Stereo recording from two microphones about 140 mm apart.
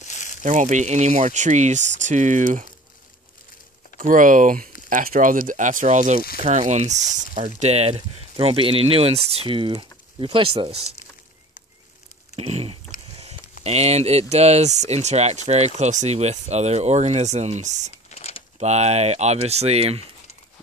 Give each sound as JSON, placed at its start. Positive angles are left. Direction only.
{"t": 0.1, "sound": "crumpling", "side_deg": 60}
{"t": 0.4, "sound": "speech", "side_deg": -60}
{"t": 4.0, "sound": "speech", "side_deg": -75}
{"t": 12.4, "sound": "a sound", "side_deg": -50}
{"t": 13.7, "sound": "speech", "side_deg": -50}
{"t": 17.9, "sound": "a sound", "side_deg": 45}
{"t": 18.6, "sound": "speech", "side_deg": -50}